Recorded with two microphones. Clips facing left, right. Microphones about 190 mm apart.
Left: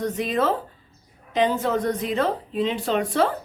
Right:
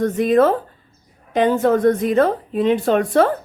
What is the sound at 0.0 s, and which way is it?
A woman's voice, 50° right (ahead or behind).